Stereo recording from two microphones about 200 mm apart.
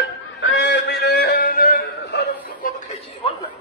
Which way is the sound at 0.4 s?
65° left (ahead or behind).